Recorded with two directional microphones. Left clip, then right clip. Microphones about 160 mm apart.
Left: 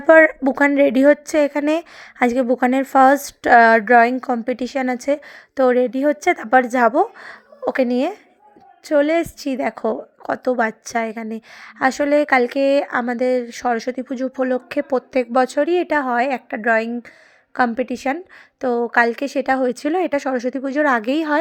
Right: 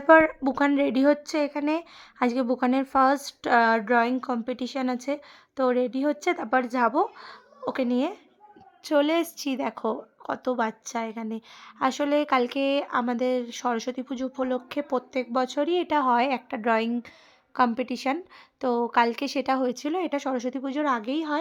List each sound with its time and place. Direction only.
0.0 s a woman's voice: 25° left (ahead or behind)
8.9 s a woman's voice: 10° left (ahead or behind); by 21.3 s 30° left (ahead or behind)